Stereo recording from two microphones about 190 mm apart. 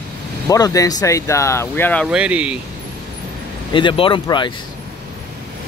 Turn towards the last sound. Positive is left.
turn(degrees=25)  # may be behind; listen again after turning